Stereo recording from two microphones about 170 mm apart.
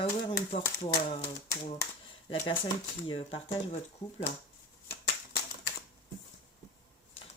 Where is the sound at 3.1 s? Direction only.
35° left (ahead or behind).